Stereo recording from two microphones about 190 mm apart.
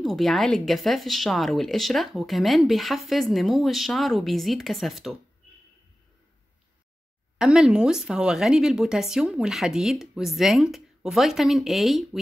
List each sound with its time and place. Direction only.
0.0 s speech: centre (ahead or behind)
7.3 s speech: 5° right (ahead or behind)